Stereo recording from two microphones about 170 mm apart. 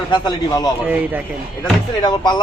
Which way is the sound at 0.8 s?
10° right (ahead or behind).